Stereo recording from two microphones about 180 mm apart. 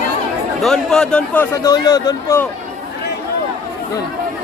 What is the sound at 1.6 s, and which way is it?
Speech, 20° left (ahead or behind).